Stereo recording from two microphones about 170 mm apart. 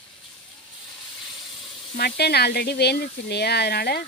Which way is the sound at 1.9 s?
70° left (ahead or behind).